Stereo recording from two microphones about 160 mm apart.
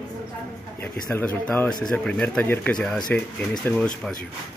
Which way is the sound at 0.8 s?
10° left (ahead or behind).